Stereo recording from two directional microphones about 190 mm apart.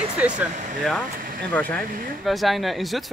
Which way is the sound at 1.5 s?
10° left (ahead or behind).